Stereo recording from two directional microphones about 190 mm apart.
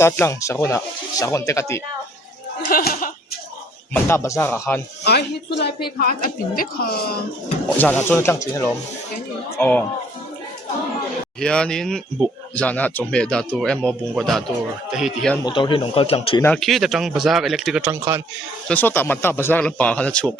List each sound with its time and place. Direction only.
0.0 s speech: 15° left (ahead or behind)
2.6 s a woman's voice: 50° left (ahead or behind)
3.9 s speech: 15° left (ahead or behind)
5.0 s a woman's voice: 60° left (ahead or behind)
7.8 s speech: 10° left (ahead or behind)
11.3 s speech: 5° left (ahead or behind)
15.4 s speech: 25° left (ahead or behind)
16.4 s speech: 5° left (ahead or behind)
18.7 s speech: 10° left (ahead or behind)